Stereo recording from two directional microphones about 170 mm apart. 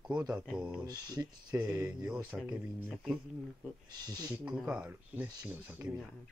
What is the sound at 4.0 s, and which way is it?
Speech, 20° right (ahead or behind).